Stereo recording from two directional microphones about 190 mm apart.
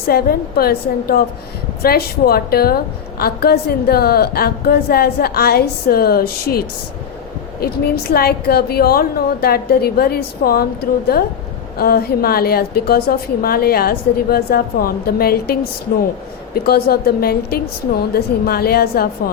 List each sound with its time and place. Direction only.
0.1 s a woman's voice: 55° left (ahead or behind)
16.6 s a woman's voice: 55° left (ahead or behind)